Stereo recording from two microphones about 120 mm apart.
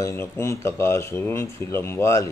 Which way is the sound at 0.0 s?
20° left (ahead or behind).